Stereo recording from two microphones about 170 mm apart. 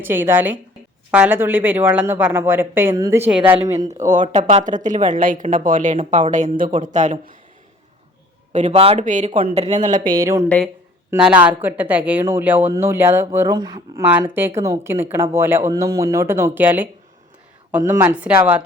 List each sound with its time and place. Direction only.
0.0 s speech: 10° right (ahead or behind)
4.2 s a woman's voice: 45° right (ahead or behind)
8.5 s a woman's voice: 40° right (ahead or behind)
9.3 s a woman's voice: 35° right (ahead or behind); by 10.2 s 55° right (ahead or behind)
11.1 s speech: 10° right (ahead or behind); by 14.0 s 25° right (ahead or behind)
14.0 s speech: 10° right (ahead or behind)